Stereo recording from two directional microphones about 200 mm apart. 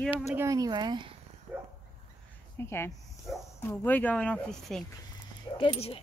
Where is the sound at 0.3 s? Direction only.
15° right (ahead or behind).